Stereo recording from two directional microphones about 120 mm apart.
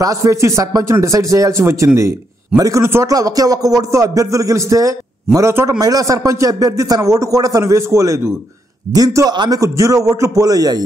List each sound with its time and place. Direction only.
0.0 s a man's voice: 25° right (ahead or behind)